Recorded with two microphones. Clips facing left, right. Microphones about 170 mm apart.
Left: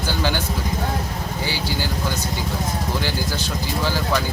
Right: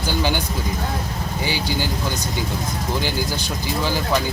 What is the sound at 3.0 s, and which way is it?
Speech, 15° right (ahead or behind).